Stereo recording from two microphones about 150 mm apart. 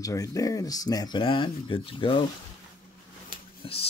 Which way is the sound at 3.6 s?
40° left (ahead or behind).